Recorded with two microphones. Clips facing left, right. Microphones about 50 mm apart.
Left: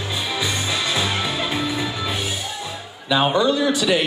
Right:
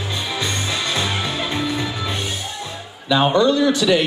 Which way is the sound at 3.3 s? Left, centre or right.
Centre.